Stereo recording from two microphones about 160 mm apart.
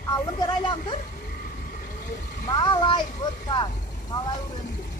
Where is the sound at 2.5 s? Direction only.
30° left (ahead or behind).